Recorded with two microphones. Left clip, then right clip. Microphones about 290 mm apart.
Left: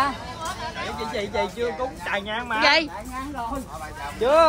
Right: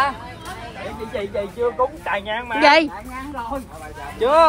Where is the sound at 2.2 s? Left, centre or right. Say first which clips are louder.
Right 3 dB; right.